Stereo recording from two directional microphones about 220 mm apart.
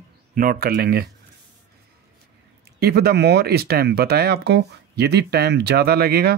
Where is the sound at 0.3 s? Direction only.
40° right (ahead or behind).